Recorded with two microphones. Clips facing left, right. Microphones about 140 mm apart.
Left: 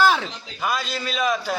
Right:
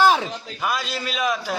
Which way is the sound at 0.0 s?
20° right (ahead or behind).